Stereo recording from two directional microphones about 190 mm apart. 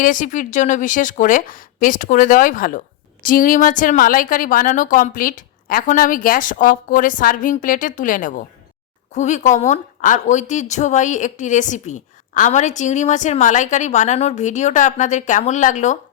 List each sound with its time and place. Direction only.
0.0 s a woman's voice: 45° left (ahead or behind)